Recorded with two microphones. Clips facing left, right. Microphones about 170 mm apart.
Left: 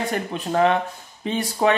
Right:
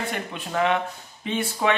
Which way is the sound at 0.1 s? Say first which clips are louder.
Left 5 dB; 40° left (ahead or behind).